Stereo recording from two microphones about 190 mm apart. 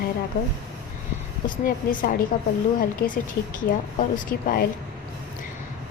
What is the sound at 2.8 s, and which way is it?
A woman's voice, 45° left (ahead or behind).